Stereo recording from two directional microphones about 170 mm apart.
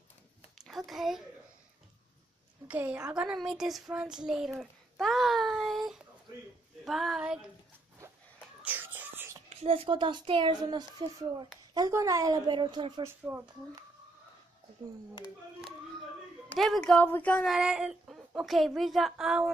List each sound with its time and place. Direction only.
0.6 s a sound: centre (ahead or behind)
2.7 s speech: 10° right (ahead or behind)
4.6 s a sound: centre (ahead or behind)
8.6 s whispering: 10° right (ahead or behind)
9.5 s speech: 35° right (ahead or behind)
13.0 s speech: 15° right (ahead or behind)
16.4 s speech: centre (ahead or behind)
17.6 s speech: 5° right (ahead or behind)